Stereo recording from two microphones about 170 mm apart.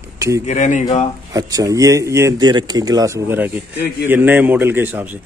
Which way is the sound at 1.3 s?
20° right (ahead or behind).